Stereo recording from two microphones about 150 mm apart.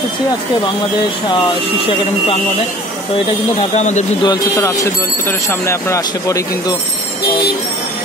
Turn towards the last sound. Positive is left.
turn(degrees=20)  # may be behind; listen again after turning